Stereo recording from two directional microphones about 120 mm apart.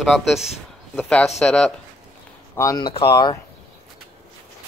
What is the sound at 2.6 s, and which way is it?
Speech, 25° left (ahead or behind).